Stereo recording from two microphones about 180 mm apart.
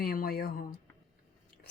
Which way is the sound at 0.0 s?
55° left (ahead or behind).